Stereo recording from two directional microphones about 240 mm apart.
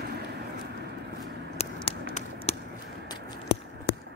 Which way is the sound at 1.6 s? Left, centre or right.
Left.